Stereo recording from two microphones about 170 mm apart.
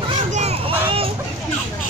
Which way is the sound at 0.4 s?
35° right (ahead or behind).